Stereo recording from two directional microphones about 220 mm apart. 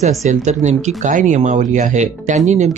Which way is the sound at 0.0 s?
30° right (ahead or behind).